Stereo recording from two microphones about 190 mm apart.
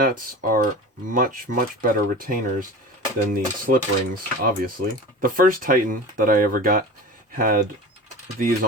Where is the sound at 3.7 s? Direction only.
50° right (ahead or behind).